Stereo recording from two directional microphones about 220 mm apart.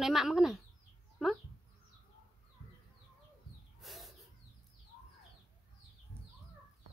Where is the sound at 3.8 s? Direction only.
Centre (ahead or behind).